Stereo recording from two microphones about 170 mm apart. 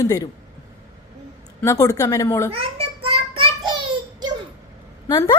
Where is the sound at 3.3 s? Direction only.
30° right (ahead or behind).